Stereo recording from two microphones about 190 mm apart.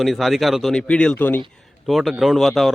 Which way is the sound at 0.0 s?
Centre (ahead or behind).